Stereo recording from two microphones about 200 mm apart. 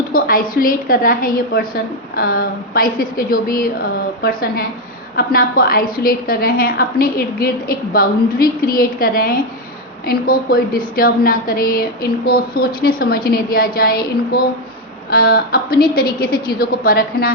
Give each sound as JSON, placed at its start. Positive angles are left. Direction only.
{"t": 0.1, "sound": "a woman's voice", "side_deg": 45}